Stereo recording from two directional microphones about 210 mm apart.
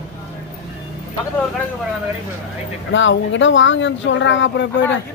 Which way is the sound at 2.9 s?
60° left (ahead or behind).